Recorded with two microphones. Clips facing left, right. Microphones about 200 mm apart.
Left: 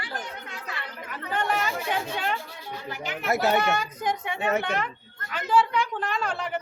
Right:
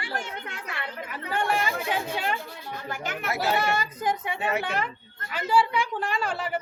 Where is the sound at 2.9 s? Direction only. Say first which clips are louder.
Right 2 dB; 50° right (ahead or behind).